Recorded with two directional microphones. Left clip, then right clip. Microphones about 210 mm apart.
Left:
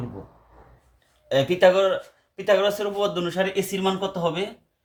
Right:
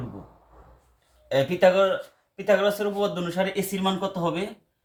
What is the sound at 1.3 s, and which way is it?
Speech, 40° left (ahead or behind).